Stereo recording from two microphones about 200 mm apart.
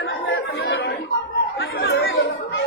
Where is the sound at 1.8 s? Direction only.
60° left (ahead or behind).